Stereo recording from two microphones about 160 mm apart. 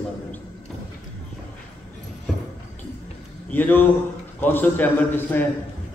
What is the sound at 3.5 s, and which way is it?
A man's voice, 10° left (ahead or behind).